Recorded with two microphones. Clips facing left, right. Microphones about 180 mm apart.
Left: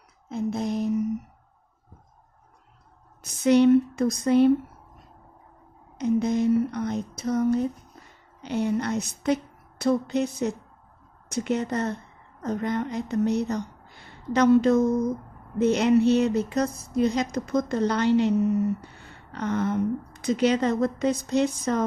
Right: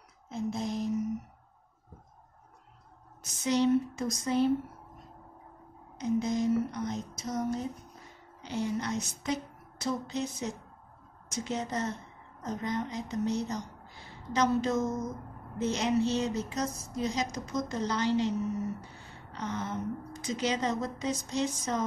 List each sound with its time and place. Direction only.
0.3 s a sound: 60° left (ahead or behind)
3.2 s speech: 60° left (ahead or behind)
5.9 s a woman's voice: 65° left (ahead or behind)